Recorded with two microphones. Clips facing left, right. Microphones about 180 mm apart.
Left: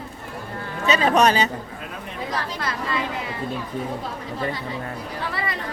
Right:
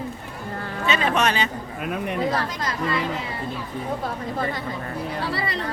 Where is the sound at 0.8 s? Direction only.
40° left (ahead or behind).